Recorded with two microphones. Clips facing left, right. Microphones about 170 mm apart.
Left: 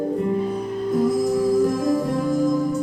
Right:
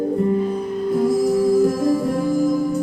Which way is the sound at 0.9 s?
10° right (ahead or behind).